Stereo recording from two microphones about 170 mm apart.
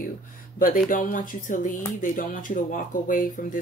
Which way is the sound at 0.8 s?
55° left (ahead or behind).